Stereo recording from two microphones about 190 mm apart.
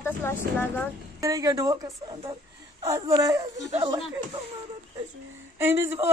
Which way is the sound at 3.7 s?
30° right (ahead or behind).